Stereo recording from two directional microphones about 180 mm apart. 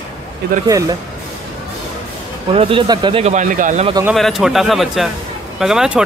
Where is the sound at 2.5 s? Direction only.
30° right (ahead or behind).